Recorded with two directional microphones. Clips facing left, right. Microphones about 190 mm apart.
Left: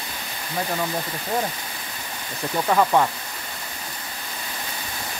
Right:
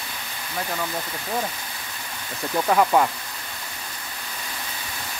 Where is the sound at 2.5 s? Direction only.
5° right (ahead or behind).